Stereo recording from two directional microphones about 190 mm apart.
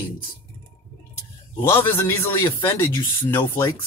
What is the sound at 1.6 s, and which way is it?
Speech, 10° left (ahead or behind).